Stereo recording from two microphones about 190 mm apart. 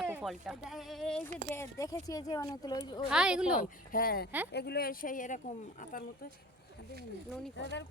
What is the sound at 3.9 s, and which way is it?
Speech, 50° left (ahead or behind).